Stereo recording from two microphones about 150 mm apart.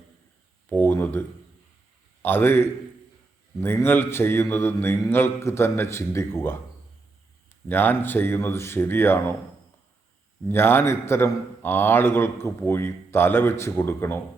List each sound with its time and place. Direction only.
0.7 s a sound: 10° left (ahead or behind)
2.2 s a man's voice: 15° left (ahead or behind)
7.7 s a man's voice: 15° left (ahead or behind)
10.5 s a man's voice: 15° left (ahead or behind)